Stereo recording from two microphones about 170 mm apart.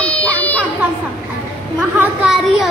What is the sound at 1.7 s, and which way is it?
Speech, 5° right (ahead or behind).